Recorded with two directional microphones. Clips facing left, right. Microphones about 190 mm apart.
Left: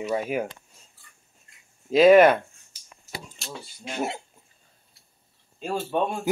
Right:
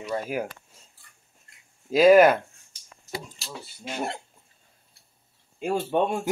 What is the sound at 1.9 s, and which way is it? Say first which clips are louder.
Speech: left 1 dB; centre (ahead or behind).